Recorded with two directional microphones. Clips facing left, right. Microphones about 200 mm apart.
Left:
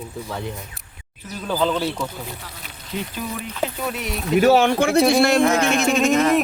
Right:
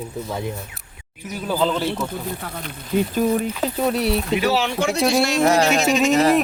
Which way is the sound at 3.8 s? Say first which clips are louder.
Right 7 dB; 35° right (ahead or behind).